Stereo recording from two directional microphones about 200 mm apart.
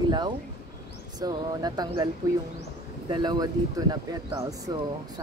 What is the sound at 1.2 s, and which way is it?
Speech, 20° right (ahead or behind).